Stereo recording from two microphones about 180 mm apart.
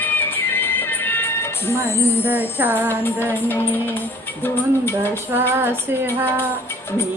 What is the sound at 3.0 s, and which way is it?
Music, 10° left (ahead or behind).